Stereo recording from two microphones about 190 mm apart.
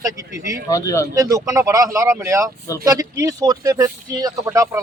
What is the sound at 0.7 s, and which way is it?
Speech, 15° left (ahead or behind).